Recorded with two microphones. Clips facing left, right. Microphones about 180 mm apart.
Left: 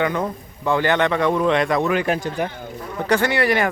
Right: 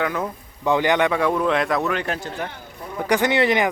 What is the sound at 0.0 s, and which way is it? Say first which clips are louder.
Speech: left 3 dB; 5° right (ahead or behind).